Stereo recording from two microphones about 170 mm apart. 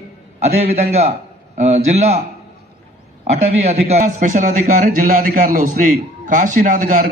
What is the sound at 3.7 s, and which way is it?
A man's voice, 40° right (ahead or behind).